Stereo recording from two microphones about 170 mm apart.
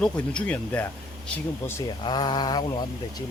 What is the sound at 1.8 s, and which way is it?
Speech, 25° left (ahead or behind).